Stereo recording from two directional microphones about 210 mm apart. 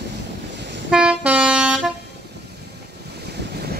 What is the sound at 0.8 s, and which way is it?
Vehicle, 5° right (ahead or behind).